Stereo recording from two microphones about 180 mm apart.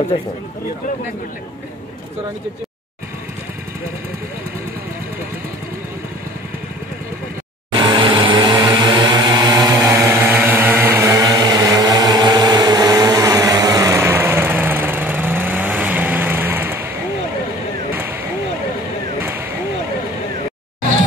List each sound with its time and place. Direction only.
7.7 s vehicle: 25° right (ahead or behind)